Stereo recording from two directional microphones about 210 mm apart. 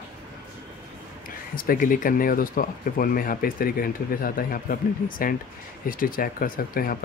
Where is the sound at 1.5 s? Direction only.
40° left (ahead or behind).